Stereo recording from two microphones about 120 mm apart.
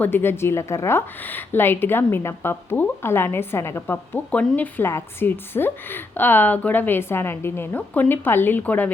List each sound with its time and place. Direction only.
0.0 s a woman's voice: 20° left (ahead or behind)